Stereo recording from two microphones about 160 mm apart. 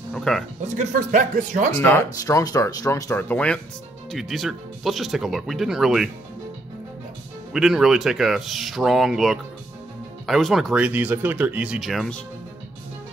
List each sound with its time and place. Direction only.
0.1 s speech: 5° left (ahead or behind)
0.7 s speech: 55° right (ahead or behind)
1.8 s speech: 15° left (ahead or behind); by 6.0 s centre (ahead or behind)
7.5 s speech: centre (ahead or behind)